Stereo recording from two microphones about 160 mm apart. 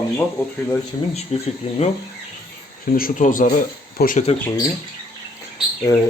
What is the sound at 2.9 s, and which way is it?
Speech, 60° left (ahead or behind).